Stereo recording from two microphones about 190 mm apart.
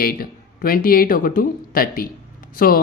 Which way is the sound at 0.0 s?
50° left (ahead or behind).